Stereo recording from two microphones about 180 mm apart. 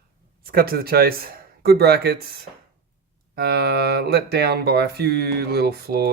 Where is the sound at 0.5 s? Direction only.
55° right (ahead or behind).